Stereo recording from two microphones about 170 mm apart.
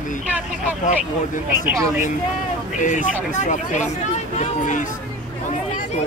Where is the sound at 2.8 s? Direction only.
50° left (ahead or behind).